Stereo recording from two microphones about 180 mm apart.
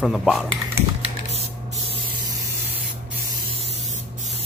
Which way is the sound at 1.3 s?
35° right (ahead or behind).